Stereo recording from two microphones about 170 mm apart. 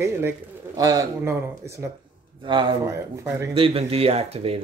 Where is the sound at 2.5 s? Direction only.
30° right (ahead or behind).